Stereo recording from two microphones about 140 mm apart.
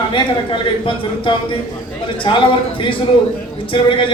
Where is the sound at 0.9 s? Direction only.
35° left (ahead or behind).